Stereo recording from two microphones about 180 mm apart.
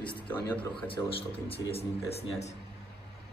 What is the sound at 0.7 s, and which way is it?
Speech, 30° left (ahead or behind).